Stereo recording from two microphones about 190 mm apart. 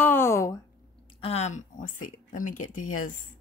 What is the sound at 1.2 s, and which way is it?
Speech, 35° left (ahead or behind).